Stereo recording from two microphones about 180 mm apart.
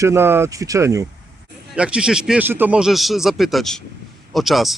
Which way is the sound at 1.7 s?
5° right (ahead or behind).